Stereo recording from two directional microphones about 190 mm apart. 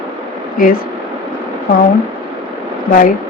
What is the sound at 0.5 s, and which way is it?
Speech, 45° left (ahead or behind).